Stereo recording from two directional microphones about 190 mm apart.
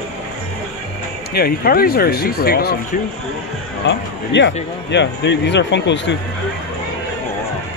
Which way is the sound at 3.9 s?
70° left (ahead or behind).